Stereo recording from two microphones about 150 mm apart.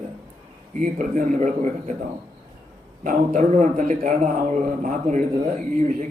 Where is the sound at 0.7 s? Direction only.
55° right (ahead or behind).